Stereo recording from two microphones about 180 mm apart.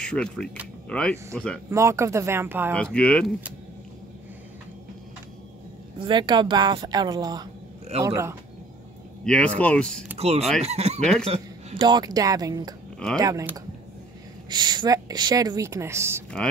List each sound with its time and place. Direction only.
0.0 s speech: 5° left (ahead or behind)
1.7 s speech: 15° right (ahead or behind)
2.7 s speech: 5° left (ahead or behind)
6.0 s a woman's voice: 25° right (ahead or behind)
9.2 s speech: 5° left (ahead or behind)
10.1 s a woman's voice: 35° right (ahead or behind); by 16.3 s 15° right (ahead or behind)